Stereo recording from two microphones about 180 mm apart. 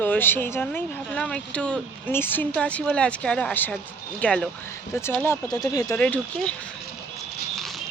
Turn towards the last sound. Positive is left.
turn(degrees=5)  # may be behind; listen again after turning